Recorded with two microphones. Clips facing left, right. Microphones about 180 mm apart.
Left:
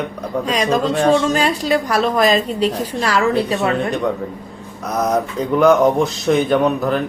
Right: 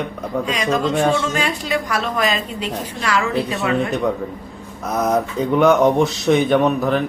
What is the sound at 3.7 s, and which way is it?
A man's voice, centre (ahead or behind).